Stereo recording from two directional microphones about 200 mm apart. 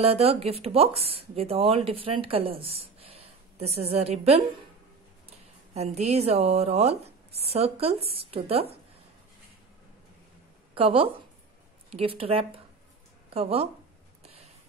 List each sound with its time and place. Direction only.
0.0 s speech: 30° right (ahead or behind)
5.8 s a woman's voice: 30° right (ahead or behind)
10.7 s a woman's voice: 25° right (ahead or behind)
14.2 s a sound: 30° right (ahead or behind)